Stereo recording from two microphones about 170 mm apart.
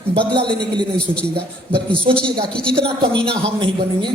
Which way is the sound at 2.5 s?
5° left (ahead or behind).